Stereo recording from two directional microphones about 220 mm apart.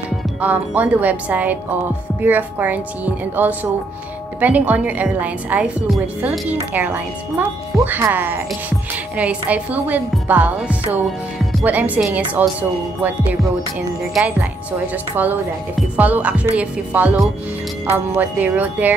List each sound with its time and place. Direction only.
0.4 s a woman's voice: 5° right (ahead or behind)
16.0 s a woman's voice: 5° right (ahead or behind)